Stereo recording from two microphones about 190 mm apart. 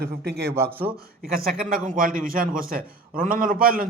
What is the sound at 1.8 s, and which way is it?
A man's voice, 45° right (ahead or behind).